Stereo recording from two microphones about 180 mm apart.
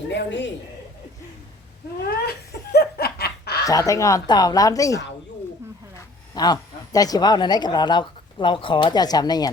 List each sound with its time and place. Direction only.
0.1 s speech: 75° left (ahead or behind)
2.7 s laughter: 60° left (ahead or behind)
3.7 s a woman's voice: 20° left (ahead or behind)
6.3 s a woman's voice: 20° left (ahead or behind)